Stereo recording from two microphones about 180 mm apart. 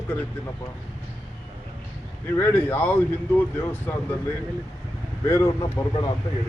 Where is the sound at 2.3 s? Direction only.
10° left (ahead or behind).